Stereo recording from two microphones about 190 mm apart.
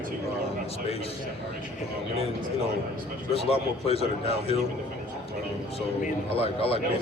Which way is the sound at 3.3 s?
30° left (ahead or behind).